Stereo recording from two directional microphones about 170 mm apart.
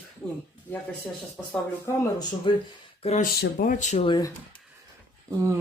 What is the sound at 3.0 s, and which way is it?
Speech, 40° left (ahead or behind).